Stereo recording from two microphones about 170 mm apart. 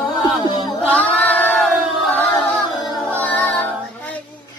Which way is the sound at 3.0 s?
10° left (ahead or behind).